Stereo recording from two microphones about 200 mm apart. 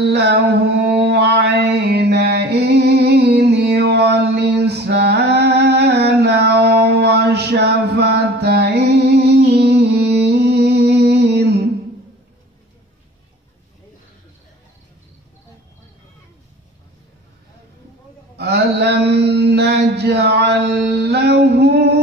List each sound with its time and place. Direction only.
0.0 s mantra: 55° right (ahead or behind)
18.3 s mantra: 55° right (ahead or behind)